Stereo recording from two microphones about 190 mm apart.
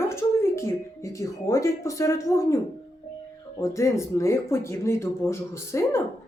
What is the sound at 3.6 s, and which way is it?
Speech, 15° left (ahead or behind).